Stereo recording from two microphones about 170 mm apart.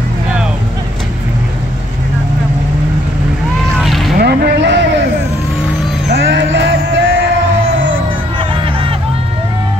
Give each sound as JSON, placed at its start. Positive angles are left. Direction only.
{"t": 3.7, "sound": "boat", "side_deg": 0}
{"t": 4.2, "sound": "a sound", "side_deg": -65}
{"t": 6.0, "sound": "music", "side_deg": -75}